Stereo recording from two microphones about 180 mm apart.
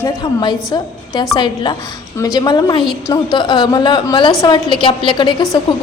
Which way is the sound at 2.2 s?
20° left (ahead or behind).